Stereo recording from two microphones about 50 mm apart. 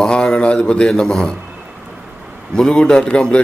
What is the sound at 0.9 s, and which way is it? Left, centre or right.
Speech, centre.